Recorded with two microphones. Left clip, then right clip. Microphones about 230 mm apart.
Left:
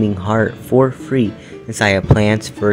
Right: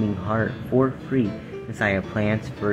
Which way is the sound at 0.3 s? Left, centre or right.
Left.